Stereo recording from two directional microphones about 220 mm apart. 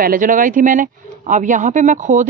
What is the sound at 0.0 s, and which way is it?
Speech, 40° right (ahead or behind).